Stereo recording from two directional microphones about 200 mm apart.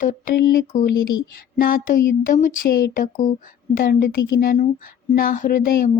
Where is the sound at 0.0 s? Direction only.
45° left (ahead or behind).